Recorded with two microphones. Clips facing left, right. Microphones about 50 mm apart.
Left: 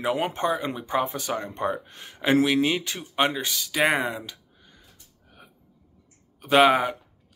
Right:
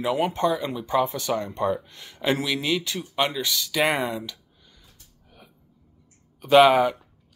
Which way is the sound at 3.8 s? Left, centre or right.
Centre.